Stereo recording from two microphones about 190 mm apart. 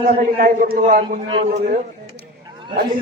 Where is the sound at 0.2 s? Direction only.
45° right (ahead or behind).